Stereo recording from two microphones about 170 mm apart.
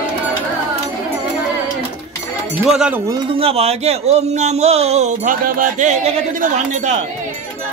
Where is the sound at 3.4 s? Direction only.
35° right (ahead or behind).